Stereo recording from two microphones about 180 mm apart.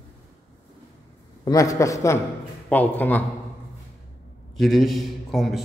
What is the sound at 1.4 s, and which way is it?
A man's voice, 20° left (ahead or behind).